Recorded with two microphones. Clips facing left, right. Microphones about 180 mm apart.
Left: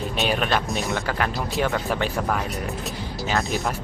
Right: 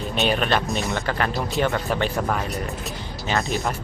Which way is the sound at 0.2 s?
5° left (ahead or behind).